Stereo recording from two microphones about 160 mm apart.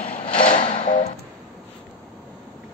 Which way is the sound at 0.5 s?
30° left (ahead or behind).